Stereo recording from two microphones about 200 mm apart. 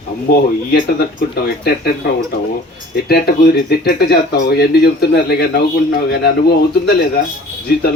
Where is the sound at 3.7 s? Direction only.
50° left (ahead or behind).